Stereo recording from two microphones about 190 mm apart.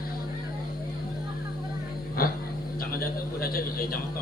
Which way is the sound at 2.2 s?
50° left (ahead or behind).